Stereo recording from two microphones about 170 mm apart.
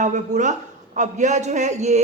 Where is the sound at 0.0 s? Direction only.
45° right (ahead or behind).